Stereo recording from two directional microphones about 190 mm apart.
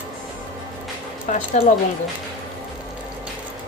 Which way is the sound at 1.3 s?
40° left (ahead or behind).